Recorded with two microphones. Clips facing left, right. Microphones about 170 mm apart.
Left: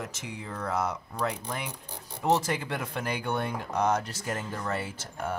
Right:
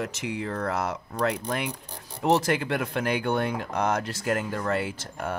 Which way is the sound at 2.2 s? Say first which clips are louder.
Right 4 dB; 85° right.